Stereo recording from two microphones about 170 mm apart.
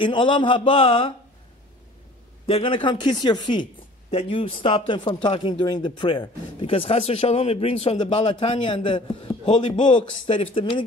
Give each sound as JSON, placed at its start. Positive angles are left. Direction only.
{"t": 0.0, "sound": "speech", "side_deg": 30}
{"t": 2.4, "sound": "a man's voice", "side_deg": 30}